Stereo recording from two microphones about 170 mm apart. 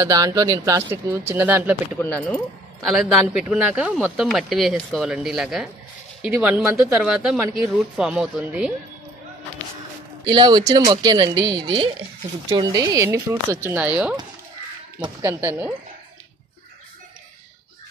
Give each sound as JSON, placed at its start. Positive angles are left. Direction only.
{"t": 0.0, "sound": "speech", "side_deg": -20}
{"t": 2.0, "sound": "speech", "side_deg": 10}
{"t": 10.2, "sound": "speech", "side_deg": -25}
{"t": 15.2, "sound": "speech", "side_deg": -15}